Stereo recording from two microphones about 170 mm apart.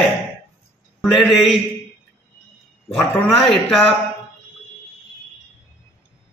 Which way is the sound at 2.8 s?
5° left (ahead or behind).